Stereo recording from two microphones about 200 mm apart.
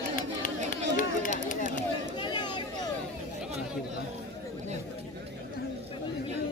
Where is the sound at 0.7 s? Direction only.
40° left (ahead or behind).